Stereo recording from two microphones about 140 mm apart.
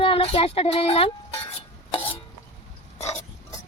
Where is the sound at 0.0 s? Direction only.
40° left (ahead or behind).